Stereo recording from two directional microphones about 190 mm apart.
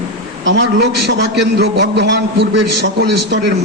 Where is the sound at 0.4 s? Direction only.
70° right (ahead or behind).